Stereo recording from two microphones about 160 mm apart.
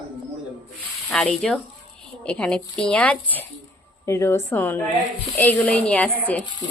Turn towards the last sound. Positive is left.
turn(degrees=10)  # may be behind; listen again after turning